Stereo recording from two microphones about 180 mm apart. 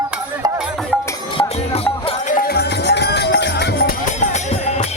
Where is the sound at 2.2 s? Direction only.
50° left (ahead or behind).